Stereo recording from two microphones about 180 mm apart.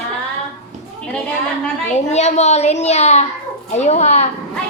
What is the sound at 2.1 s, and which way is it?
A woman's voice, 40° left (ahead or behind).